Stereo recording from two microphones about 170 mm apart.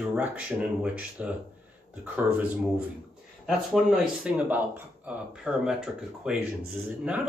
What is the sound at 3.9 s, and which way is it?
Speech, 5° right (ahead or behind).